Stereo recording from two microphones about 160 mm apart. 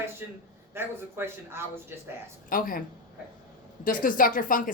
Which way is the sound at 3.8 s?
60° left (ahead or behind).